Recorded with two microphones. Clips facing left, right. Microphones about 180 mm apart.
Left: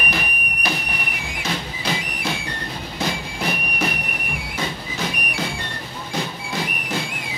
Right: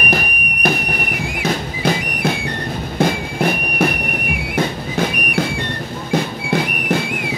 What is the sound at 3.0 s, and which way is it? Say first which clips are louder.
Music: right 9 dB; 55° right (ahead or behind).